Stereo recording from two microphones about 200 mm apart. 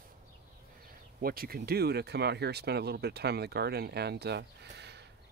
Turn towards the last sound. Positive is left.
turn(degrees=-55)  # may be behind; listen again after turning